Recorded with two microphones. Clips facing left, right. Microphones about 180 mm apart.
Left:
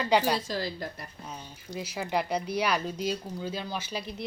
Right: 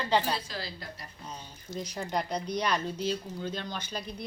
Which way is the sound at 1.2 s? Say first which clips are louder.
Right 1 dB; 10° left (ahead or behind).